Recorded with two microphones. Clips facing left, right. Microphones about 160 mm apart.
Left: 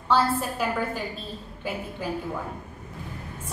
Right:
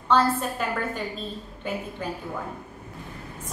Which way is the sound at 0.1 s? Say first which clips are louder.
Right 1 dB; 5° left (ahead or behind).